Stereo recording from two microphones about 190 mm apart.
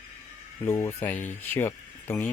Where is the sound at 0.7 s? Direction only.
15° left (ahead or behind).